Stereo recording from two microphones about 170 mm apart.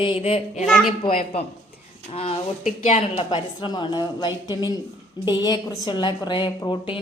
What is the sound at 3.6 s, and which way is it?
A woman's voice, 25° left (ahead or behind).